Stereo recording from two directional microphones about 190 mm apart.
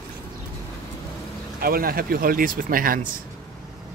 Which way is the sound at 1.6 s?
50° right (ahead or behind).